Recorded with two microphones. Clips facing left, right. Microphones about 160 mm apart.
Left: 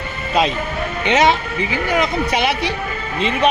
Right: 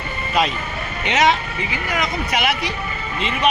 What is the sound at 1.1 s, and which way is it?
Speech, 30° left (ahead or behind).